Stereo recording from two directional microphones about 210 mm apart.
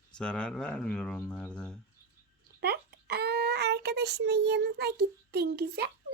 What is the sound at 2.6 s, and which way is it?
A child's voice, 50° right (ahead or behind).